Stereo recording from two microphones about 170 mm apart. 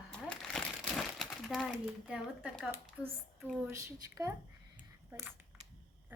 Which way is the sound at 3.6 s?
20° right (ahead or behind).